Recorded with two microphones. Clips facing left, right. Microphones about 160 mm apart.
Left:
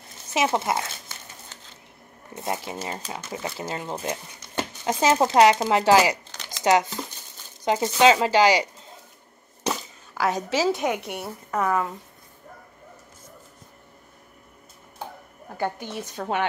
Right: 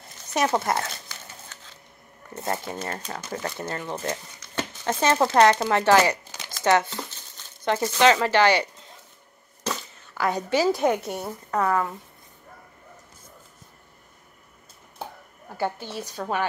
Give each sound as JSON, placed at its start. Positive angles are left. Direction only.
{"t": 0.3, "sound": "speech", "side_deg": 5}
{"t": 2.3, "sound": "speech", "side_deg": 10}
{"t": 9.7, "sound": "a sound", "side_deg": 10}
{"t": 10.7, "sound": "speech", "side_deg": 0}
{"t": 11.5, "sound": "speech", "side_deg": 15}
{"t": 15.8, "sound": "speech", "side_deg": 20}